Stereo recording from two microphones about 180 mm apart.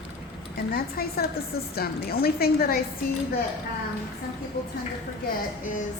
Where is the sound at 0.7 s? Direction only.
60° left (ahead or behind).